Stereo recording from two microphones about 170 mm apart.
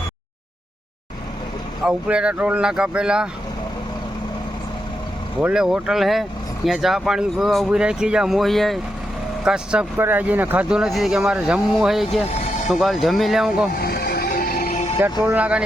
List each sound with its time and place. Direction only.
1.8 s speech: 5° right (ahead or behind)
5.4 s speech: 5° right (ahead or behind)
12.2 s music: 40° left (ahead or behind)
12.6 s speech: centre (ahead or behind)
13.7 s music: 65° left (ahead or behind); by 14.9 s 45° left (ahead or behind)
15.2 s speech: 10° right (ahead or behind)